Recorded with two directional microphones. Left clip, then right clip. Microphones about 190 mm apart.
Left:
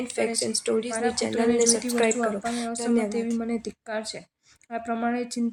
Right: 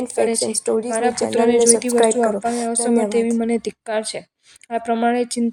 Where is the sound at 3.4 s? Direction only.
25° right (ahead or behind).